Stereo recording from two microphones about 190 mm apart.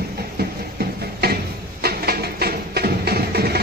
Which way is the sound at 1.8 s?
55° right (ahead or behind).